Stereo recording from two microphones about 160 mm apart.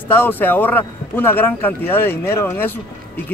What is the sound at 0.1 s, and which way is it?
Speech, 10° left (ahead or behind).